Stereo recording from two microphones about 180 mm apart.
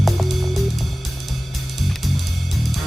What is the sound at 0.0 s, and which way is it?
Music, centre (ahead or behind).